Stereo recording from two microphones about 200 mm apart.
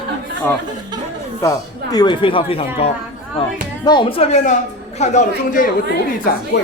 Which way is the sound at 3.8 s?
25° left (ahead or behind).